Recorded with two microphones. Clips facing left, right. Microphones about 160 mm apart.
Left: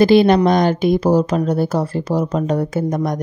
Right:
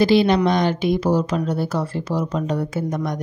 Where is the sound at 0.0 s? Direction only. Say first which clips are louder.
Left 4 dB; 50° left (ahead or behind).